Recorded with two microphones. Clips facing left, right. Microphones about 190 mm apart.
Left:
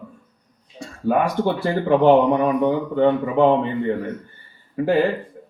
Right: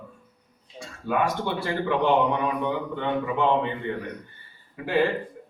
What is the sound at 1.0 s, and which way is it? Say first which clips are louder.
Speech: left 6 dB; 40° left (ahead or behind).